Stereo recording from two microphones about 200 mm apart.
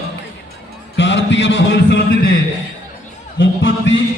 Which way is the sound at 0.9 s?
60° left (ahead or behind).